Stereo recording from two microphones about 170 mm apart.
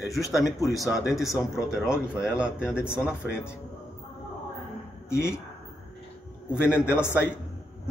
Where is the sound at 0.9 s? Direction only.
Centre (ahead or behind).